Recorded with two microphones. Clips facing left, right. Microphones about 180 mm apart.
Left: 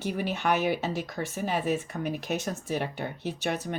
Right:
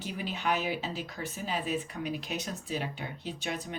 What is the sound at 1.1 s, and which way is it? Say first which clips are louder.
Speech: left 5 dB; 65° left (ahead or behind).